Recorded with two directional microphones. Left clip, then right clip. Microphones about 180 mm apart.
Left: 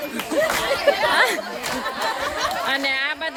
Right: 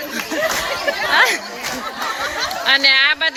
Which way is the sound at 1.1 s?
15° left (ahead or behind).